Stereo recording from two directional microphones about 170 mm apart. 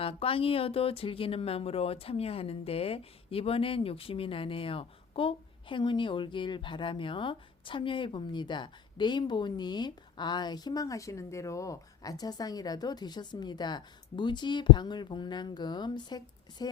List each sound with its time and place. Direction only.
0.0 s speech: 35° left (ahead or behind)